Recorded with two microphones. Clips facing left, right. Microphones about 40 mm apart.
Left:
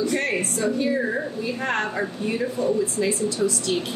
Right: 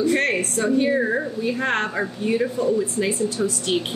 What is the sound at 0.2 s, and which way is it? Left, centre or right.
Speech, right.